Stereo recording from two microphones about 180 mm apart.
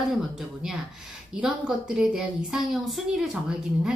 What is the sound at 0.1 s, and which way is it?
A woman's voice, centre (ahead or behind).